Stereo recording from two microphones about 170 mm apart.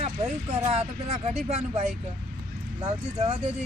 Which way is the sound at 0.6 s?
40° right (ahead or behind).